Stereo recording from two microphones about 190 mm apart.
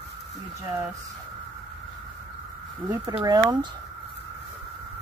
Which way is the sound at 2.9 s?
15° right (ahead or behind).